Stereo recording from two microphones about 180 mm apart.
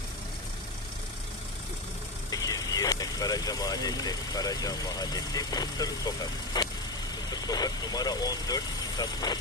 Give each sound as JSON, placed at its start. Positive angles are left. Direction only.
{"t": 2.3, "sound": "speech", "side_deg": 20}